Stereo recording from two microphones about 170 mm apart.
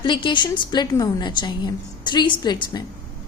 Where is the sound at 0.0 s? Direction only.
30° left (ahead or behind).